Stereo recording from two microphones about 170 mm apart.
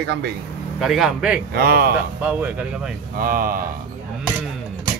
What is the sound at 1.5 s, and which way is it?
Speech, 65° right (ahead or behind).